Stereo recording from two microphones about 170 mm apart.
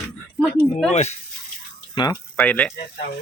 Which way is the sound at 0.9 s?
40° left (ahead or behind).